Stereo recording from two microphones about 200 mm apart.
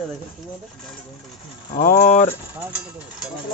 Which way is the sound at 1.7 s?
40° left (ahead or behind).